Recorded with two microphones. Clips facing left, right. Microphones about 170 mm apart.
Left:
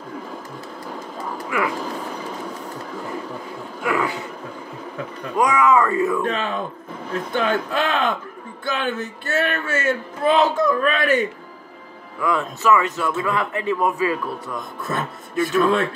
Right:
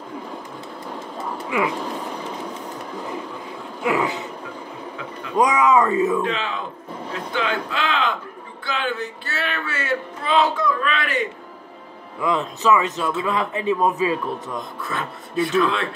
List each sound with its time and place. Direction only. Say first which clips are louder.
1.5 s speech: right 1 dB; 20° right (ahead or behind)
1.8 s a sound: even; centre (ahead or behind)
3.8 s a man's voice: right 1 dB; 20° right (ahead or behind)
5.4 s a man's voice: even; 20° right (ahead or behind)
6.2 s speech: left 2 dB; 50° left (ahead or behind)
12.2 s a man's voice: even; 20° right (ahead or behind)
14.8 s speech: left 2 dB; 45° left (ahead or behind)